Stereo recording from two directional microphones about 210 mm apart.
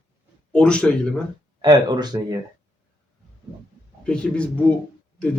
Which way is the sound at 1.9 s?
20° right (ahead or behind).